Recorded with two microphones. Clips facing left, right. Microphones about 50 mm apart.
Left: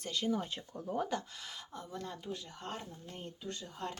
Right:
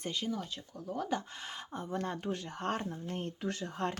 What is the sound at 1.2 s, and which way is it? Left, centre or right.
Speech, right.